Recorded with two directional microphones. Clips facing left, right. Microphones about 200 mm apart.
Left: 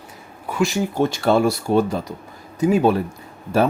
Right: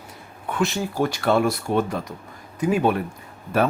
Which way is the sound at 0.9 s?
25° left (ahead or behind).